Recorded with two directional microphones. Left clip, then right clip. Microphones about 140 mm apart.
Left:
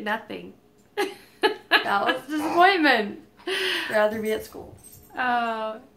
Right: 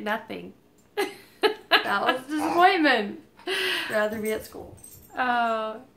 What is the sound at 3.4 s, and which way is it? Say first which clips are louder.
Speech: left 1 dB; 25° right (ahead or behind).